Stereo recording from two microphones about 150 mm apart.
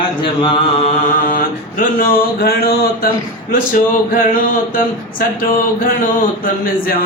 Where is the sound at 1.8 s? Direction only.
70° left (ahead or behind); by 3.1 s 90° left.